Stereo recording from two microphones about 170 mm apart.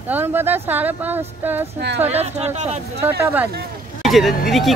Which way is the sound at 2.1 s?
40° right (ahead or behind).